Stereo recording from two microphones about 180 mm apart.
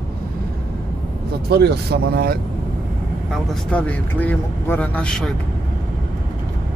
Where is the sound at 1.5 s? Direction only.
65° right (ahead or behind).